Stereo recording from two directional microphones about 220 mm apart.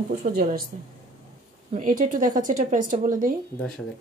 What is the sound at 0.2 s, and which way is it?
Speech, 40° right (ahead or behind).